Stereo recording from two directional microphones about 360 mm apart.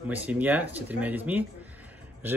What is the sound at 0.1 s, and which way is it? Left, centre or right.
Speech, centre.